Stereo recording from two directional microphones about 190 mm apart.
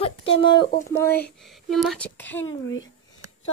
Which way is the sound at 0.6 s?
50° left (ahead or behind).